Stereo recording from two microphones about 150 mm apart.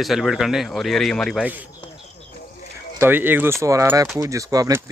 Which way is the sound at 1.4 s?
10° right (ahead or behind).